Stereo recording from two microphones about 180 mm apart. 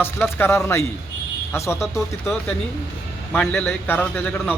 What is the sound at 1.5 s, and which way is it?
Speech, 15° left (ahead or behind).